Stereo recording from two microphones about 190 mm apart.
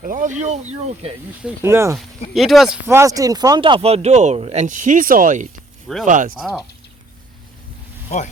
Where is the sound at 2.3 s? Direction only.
Centre (ahead or behind).